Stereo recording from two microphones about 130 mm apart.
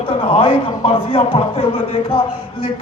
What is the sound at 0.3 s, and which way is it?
A man's voice, 45° left (ahead or behind).